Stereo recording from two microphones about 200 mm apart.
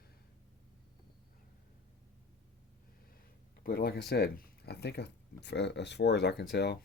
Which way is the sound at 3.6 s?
50° left (ahead or behind).